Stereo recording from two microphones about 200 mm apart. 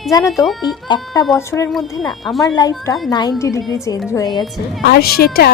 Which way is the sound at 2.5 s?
20° left (ahead or behind).